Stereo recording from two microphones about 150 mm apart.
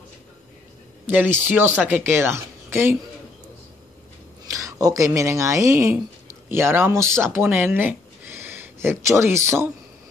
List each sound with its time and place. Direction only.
1.0 s speech: 10° right (ahead or behind)
4.5 s speech: 20° right (ahead or behind)